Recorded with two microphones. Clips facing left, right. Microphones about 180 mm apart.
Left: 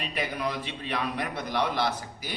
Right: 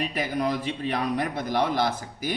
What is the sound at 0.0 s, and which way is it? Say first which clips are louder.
A man's voice: right 4 dB; 40° right (ahead or behind).